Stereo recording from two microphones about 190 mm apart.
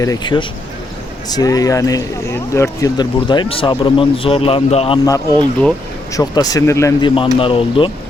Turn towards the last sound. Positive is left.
turn(degrees=25)  # may be behind; listen again after turning